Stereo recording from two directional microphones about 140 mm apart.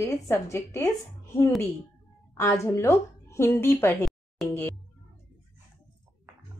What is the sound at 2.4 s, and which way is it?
A woman's voice, 20° left (ahead or behind).